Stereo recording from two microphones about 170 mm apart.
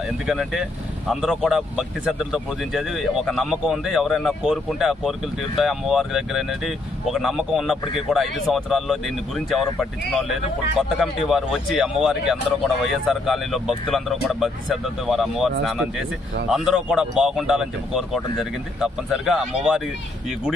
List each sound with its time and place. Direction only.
0.3 s speech: centre (ahead or behind)